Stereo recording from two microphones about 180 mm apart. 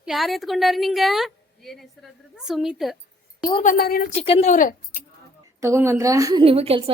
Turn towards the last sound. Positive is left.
turn(degrees=-30)  # may be behind; listen again after turning